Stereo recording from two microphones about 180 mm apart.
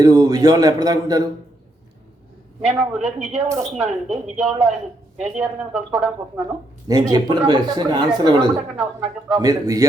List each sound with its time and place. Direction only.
0.0 s speech: 20° right (ahead or behind)
2.6 s speech: 5° right (ahead or behind)
6.8 s speech: 20° right (ahead or behind)
8.7 s speech: 5° right (ahead or behind)
9.4 s speech: 20° right (ahead or behind)